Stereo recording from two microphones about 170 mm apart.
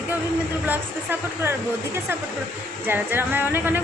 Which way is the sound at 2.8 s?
10° right (ahead or behind).